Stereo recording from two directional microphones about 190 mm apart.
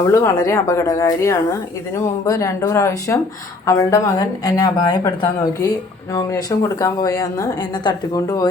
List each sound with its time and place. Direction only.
0.0 s speech: 15° left (ahead or behind)